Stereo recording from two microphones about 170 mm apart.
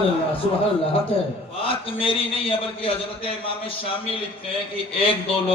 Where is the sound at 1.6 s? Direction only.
30° left (ahead or behind).